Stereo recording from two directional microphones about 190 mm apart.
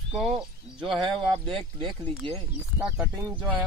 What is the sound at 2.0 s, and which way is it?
Speech, 10° left (ahead or behind).